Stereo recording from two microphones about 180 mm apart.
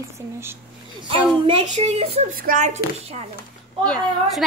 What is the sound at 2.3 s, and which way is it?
Speech, 50° right (ahead or behind).